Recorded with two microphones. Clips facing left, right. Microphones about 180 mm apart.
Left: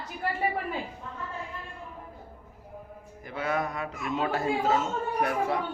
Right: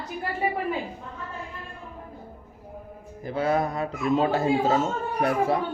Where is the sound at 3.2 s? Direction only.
30° right (ahead or behind).